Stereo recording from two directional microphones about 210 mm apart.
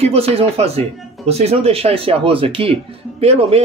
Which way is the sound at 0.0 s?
30° right (ahead or behind).